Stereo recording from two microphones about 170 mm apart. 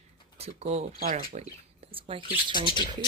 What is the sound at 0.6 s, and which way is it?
Speech, 40° right (ahead or behind).